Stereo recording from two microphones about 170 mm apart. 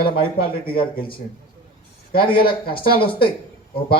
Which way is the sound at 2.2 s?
30° left (ahead or behind).